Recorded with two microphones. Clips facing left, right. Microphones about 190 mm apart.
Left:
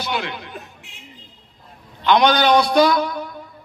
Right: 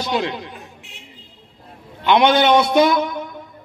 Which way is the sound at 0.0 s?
30° right (ahead or behind).